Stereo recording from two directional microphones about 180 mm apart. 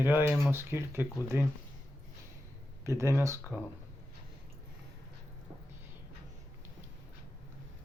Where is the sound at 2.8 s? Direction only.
15° right (ahead or behind).